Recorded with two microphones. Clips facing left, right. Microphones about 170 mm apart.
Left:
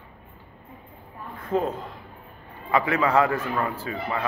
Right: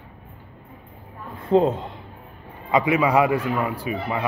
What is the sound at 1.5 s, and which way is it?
Speech, 25° right (ahead or behind).